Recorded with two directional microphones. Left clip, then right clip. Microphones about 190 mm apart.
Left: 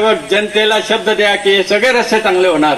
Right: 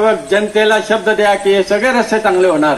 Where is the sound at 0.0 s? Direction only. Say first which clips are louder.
Even; 40° left (ahead or behind).